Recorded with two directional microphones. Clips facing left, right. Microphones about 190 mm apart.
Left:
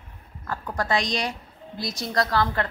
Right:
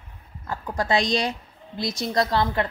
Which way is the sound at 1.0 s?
30° right (ahead or behind).